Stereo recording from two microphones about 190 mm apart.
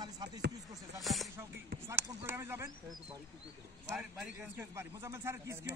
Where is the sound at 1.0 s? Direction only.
Centre (ahead or behind).